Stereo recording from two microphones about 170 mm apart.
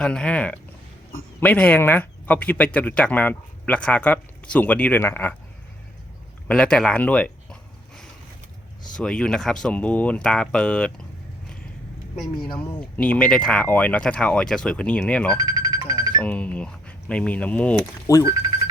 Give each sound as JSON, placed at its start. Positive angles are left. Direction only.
{"t": 0.0, "sound": "speech", "side_deg": 5}
{"t": 6.5, "sound": "a sound", "side_deg": 5}
{"t": 9.0, "sound": "speech", "side_deg": 5}
{"t": 12.1, "sound": "speech", "side_deg": 0}
{"t": 12.5, "sound": "speech", "side_deg": 10}
{"t": 15.4, "sound": "music", "side_deg": -25}
{"t": 16.2, "sound": "speech", "side_deg": 10}
{"t": 18.1, "sound": "speech", "side_deg": 25}